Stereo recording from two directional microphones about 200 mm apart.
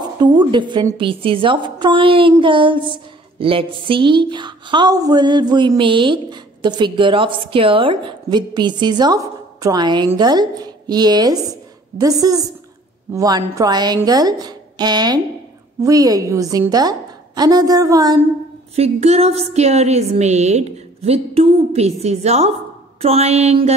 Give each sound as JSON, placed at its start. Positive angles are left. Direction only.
{"t": 0.0, "sound": "a woman's voice", "side_deg": -20}
{"t": 18.8, "sound": "a woman's voice", "side_deg": -30}